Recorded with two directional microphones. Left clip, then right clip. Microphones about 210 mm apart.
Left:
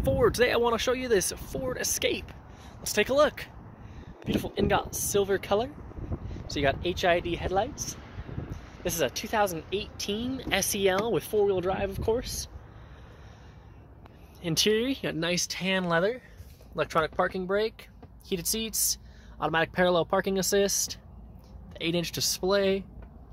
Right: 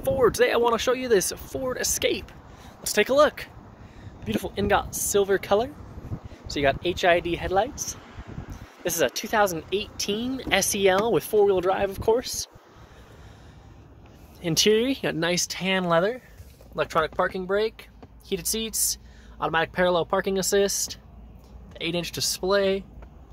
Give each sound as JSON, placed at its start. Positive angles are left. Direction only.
{"t": 0.0, "sound": "speech", "side_deg": -5}
{"t": 8.1, "sound": "a sound", "side_deg": -60}
{"t": 8.8, "sound": "speech", "side_deg": -20}
{"t": 14.4, "sound": "speech", "side_deg": -25}
{"t": 15.6, "sound": "speech", "side_deg": -10}
{"t": 16.7, "sound": "speech", "side_deg": 10}